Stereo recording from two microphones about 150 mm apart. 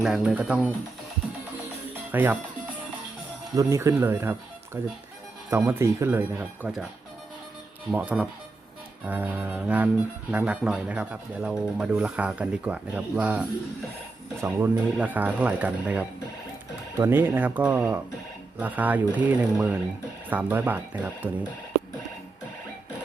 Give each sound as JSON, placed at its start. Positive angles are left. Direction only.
{"t": 0.0, "sound": "speech", "side_deg": -5}
{"t": 2.1, "sound": "speech", "side_deg": -10}
{"t": 3.5, "sound": "speech", "side_deg": -20}
{"t": 7.9, "sound": "speech", "side_deg": -10}
{"t": 14.4, "sound": "speech", "side_deg": -15}